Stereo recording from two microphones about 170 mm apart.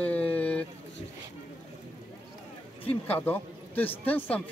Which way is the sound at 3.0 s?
10° left (ahead or behind).